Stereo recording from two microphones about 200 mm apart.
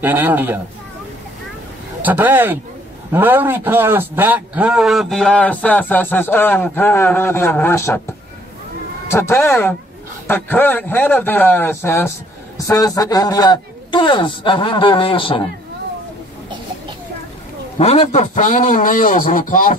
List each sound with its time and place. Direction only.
0.0 s speech: 10° right (ahead or behind)
2.0 s a man's voice: 10° right (ahead or behind); by 8.0 s 15° left (ahead or behind)
9.1 s a man's voice: 10° left (ahead or behind)
17.7 s a man's voice: 35° left (ahead or behind)